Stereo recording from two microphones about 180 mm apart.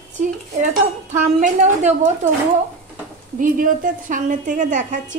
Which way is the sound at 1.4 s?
40° right (ahead or behind).